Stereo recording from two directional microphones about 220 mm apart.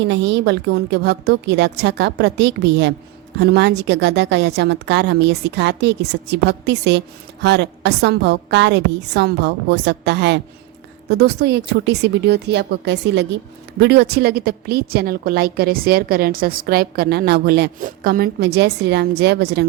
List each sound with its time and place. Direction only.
0.0 s a woman's voice: 55° right (ahead or behind)